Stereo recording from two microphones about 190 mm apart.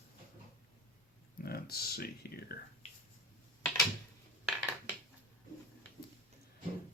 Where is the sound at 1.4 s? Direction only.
55° left (ahead or behind).